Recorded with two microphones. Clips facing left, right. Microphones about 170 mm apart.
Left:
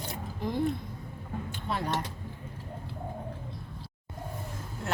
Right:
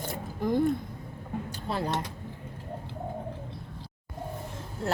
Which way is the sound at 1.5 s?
35° right (ahead or behind).